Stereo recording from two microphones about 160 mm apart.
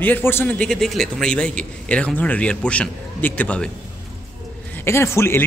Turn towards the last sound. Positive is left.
turn(degrees=15)  # may be behind; listen again after turning